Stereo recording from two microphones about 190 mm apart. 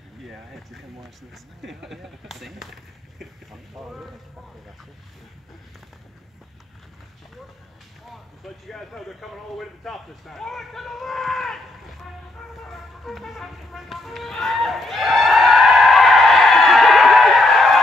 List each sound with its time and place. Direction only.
0.3 s a man's voice: centre (ahead or behind)
8.6 s a man's voice: centre (ahead or behind)
12.6 s music: centre (ahead or behind)